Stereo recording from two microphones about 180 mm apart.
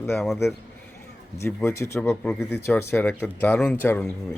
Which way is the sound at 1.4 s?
15° left (ahead or behind).